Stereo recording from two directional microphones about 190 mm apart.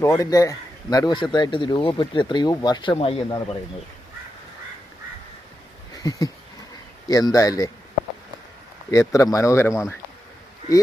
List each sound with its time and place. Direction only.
0.0 s speech: 15° left (ahead or behind)
6.0 s a sound: 20° left (ahead or behind)
7.1 s speech: 20° left (ahead or behind)
8.9 s speech: 15° left (ahead or behind)